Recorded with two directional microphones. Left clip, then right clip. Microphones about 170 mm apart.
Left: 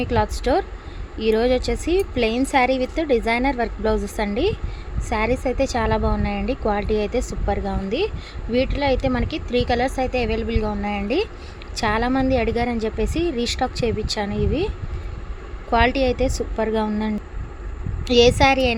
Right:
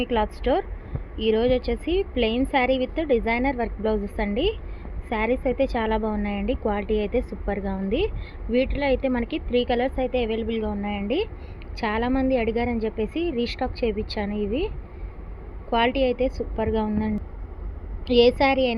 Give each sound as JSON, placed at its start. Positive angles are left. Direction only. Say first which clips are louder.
{"t": 0.0, "sound": "a woman's voice", "louder": "left 2 dB", "side_deg": 15}
{"t": 15.7, "sound": "a woman's voice", "louder": "left 3 dB", "side_deg": 20}